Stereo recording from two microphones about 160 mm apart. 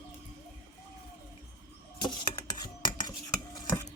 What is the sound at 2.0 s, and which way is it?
Cutlery, 25° left (ahead or behind).